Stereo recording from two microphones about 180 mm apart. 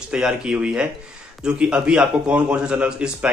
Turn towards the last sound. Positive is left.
turn(degrees=-5)  # may be behind; listen again after turning